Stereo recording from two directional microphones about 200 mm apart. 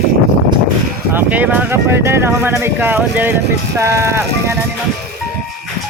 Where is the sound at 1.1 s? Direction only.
10° right (ahead or behind).